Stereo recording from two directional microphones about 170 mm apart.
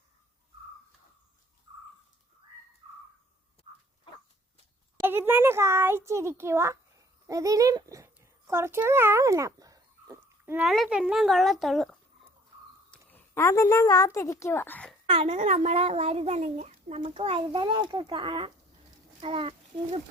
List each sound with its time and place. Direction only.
4.9 s a sound: 10° right (ahead or behind)
9.6 s dog: 20° right (ahead or behind)
10.7 s speech: 5° right (ahead or behind)
12.9 s speech: 10° left (ahead or behind)
15.1 s a child's voice: 30° right (ahead or behind)